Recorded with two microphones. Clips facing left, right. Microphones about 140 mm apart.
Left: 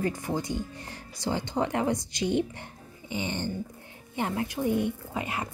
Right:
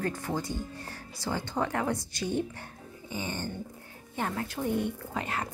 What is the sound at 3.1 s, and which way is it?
Dog, 20° left (ahead or behind).